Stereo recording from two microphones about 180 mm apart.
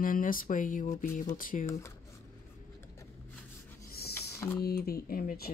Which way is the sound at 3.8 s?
60° left (ahead or behind).